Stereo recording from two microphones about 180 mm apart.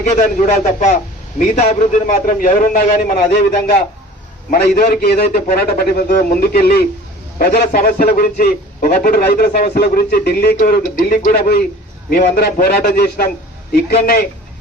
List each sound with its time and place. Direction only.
0.1 s a man's voice: 45° left (ahead or behind)
4.5 s a man's voice: 60° left (ahead or behind)